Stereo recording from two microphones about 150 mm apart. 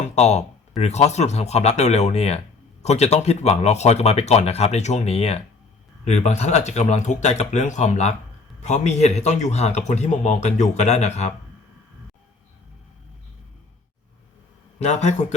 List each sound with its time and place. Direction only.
0.0 s speech: 50° left (ahead or behind)
14.8 s speech: 50° left (ahead or behind)